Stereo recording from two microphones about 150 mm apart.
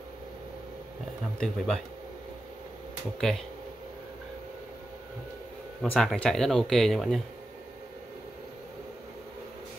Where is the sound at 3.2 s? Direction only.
Centre (ahead or behind).